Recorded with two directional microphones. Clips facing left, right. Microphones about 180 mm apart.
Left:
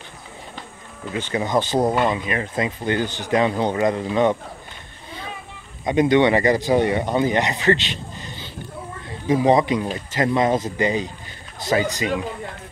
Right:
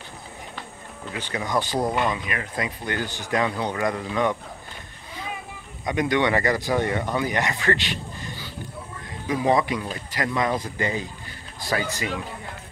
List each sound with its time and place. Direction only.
1.1 s speech: 25° left (ahead or behind)
5.9 s speech: 25° left (ahead or behind)